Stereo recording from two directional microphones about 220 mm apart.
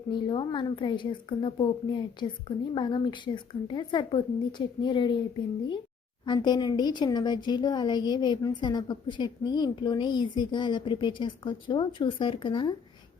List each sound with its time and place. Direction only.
0.1 s speech: 20° left (ahead or behind)
6.2 s speech: 20° left (ahead or behind)